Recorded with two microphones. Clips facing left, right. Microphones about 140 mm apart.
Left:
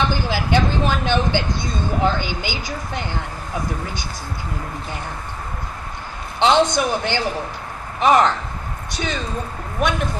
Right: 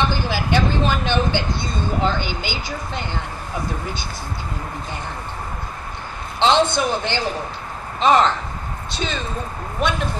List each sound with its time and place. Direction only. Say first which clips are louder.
0.1 s speech: left 1 dB; 15° left (ahead or behind)
6.4 s speech: left 1 dB; 15° left (ahead or behind)